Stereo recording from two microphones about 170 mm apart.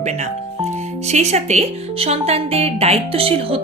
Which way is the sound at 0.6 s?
40° right (ahead or behind).